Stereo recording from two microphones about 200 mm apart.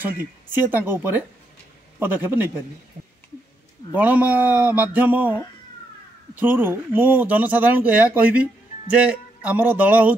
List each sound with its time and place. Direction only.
0.5 s speech: 10° right (ahead or behind)
3.9 s speech: 10° right (ahead or behind)